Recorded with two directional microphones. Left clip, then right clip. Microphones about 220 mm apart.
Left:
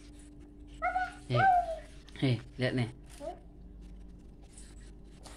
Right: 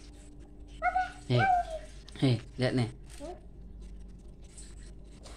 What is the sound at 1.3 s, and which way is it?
Speech, 25° right (ahead or behind).